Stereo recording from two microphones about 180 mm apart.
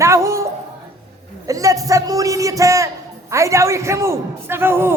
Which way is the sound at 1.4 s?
20° right (ahead or behind).